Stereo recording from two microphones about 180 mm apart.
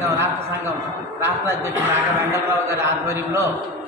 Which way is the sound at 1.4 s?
15° right (ahead or behind).